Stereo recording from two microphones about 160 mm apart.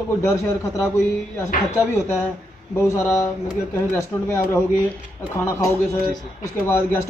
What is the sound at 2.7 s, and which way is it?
Speech, 15° left (ahead or behind).